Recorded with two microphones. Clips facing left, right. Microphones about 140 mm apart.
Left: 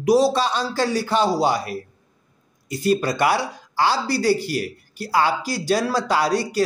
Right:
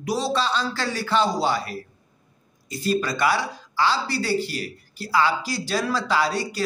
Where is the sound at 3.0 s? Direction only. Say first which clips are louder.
Left 3 dB; 45° left (ahead or behind).